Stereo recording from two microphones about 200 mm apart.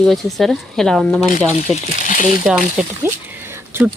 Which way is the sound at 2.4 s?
5° right (ahead or behind).